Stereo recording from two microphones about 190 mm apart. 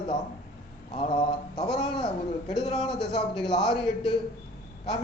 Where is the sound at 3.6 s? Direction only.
5° left (ahead or behind).